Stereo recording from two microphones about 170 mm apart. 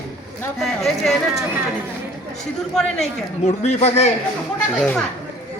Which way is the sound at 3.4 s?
40° left (ahead or behind).